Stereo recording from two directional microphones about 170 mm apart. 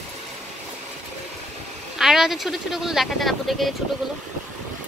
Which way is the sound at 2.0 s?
Centre (ahead or behind).